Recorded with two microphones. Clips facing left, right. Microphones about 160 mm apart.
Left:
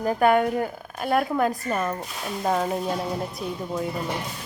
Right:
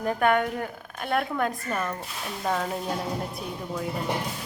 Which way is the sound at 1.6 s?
30° left (ahead or behind).